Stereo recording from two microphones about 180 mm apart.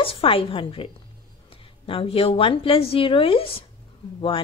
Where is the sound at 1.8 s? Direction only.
30° left (ahead or behind).